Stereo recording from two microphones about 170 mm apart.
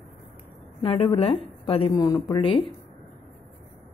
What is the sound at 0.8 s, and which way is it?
A woman's voice, 30° left (ahead or behind).